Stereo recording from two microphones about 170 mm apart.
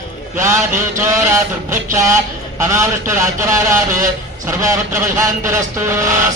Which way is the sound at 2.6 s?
15° right (ahead or behind).